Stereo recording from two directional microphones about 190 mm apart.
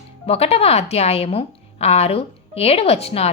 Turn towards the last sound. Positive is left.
turn(degrees=30)  # may be behind; listen again after turning